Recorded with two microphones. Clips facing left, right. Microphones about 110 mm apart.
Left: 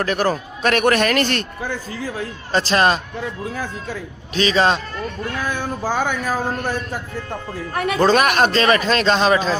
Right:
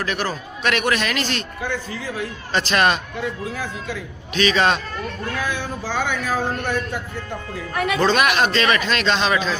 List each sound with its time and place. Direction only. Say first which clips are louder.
0.0 s a man's voice: left 5 dB; 45° left (ahead or behind)
1.9 s speech: left 1 dB; 35° left (ahead or behind)
4.4 s speech: left 1 dB; 30° left (ahead or behind)
5.5 s a man's voice: left 3 dB; 45° left (ahead or behind)